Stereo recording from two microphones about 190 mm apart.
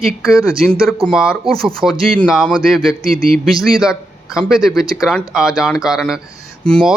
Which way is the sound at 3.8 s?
5° right (ahead or behind).